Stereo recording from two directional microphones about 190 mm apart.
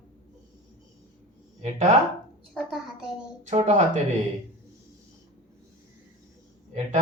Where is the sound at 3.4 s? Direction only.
40° right (ahead or behind).